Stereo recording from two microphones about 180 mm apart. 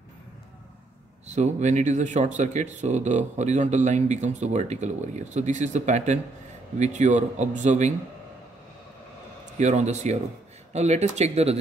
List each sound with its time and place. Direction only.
1.2 s speech: 40° right (ahead or behind)
9.6 s speech: 40° right (ahead or behind)